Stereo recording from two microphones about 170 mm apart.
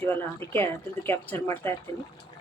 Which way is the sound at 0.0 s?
10° left (ahead or behind).